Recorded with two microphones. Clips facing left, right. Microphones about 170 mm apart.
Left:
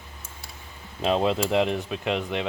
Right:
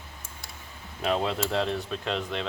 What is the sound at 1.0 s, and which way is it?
Speech, 25° left (ahead or behind).